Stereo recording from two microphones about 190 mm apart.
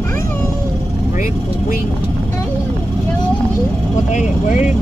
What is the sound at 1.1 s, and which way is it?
Vehicle, 45° left (ahead or behind).